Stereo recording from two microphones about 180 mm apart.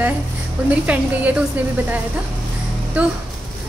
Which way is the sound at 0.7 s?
10° right (ahead or behind).